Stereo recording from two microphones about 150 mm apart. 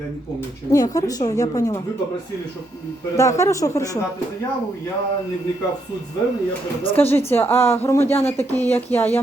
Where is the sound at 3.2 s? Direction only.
20° left (ahead or behind).